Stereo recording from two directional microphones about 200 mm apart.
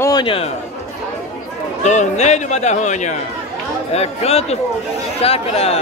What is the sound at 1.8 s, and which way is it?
A man's voice, 35° left (ahead or behind).